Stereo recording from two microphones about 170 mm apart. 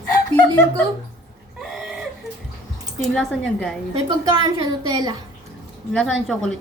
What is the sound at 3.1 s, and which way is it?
Speech, centre (ahead or behind).